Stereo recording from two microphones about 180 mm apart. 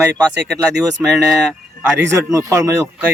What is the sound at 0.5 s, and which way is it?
Speech, centre (ahead or behind).